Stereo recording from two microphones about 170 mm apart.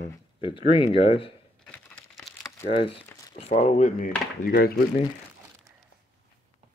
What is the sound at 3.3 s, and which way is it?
Speech, 40° left (ahead or behind).